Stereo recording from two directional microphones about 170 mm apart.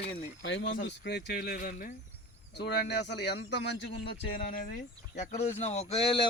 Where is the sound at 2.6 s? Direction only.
75° left (ahead or behind).